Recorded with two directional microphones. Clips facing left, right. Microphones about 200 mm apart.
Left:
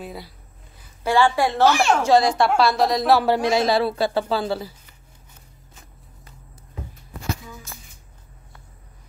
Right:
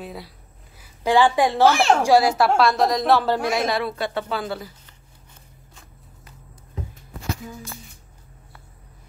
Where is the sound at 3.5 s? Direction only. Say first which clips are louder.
Left 4 dB; 30° left (ahead or behind).